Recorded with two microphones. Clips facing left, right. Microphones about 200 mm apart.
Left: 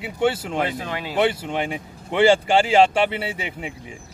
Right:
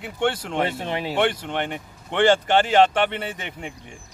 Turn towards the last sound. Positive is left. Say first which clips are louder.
# left 3 dB
turn(degrees=5)  # may be behind; listen again after turning